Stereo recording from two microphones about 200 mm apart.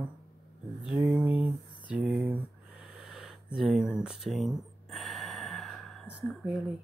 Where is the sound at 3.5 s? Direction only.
Centre (ahead or behind).